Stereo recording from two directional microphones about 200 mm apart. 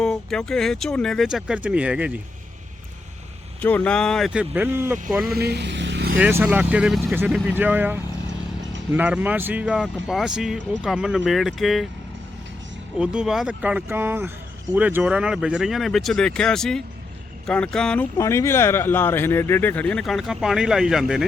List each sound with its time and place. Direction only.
0.0 s speech: 5° left (ahead or behind)
3.6 s speech: 10° left (ahead or behind); by 4.9 s 10° right (ahead or behind)
5.3 s speech: 55° right (ahead or behind)
6.1 s speech: 5° right (ahead or behind)
13.0 s speech: 5° right (ahead or behind)